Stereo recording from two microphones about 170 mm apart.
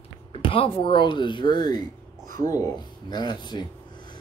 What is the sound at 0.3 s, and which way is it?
A man's voice, 30° left (ahead or behind).